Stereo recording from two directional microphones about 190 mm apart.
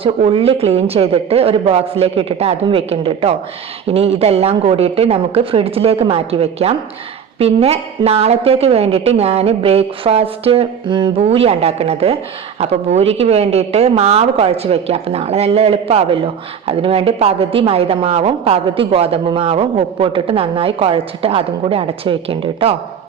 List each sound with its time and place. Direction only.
0.3 s a woman's voice: 30° right (ahead or behind)